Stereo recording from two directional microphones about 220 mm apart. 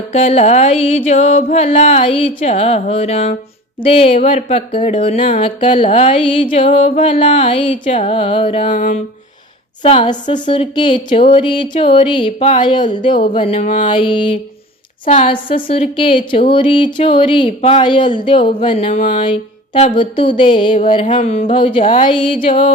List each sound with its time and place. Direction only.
0.1 s mantra: 30° left (ahead or behind)
3.8 s music: 25° left (ahead or behind)
8.7 s mantra: 35° left (ahead or behind)
9.8 s music: 25° left (ahead or behind)
13.8 s music: 20° left (ahead or behind)
15.0 s mantra: 35° left (ahead or behind)
16.0 s music: 25° left (ahead or behind)